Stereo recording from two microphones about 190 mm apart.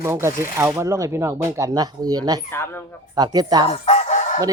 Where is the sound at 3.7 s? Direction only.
35° left (ahead or behind).